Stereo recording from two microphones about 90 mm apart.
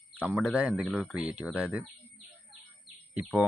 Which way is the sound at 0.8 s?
5° left (ahead or behind).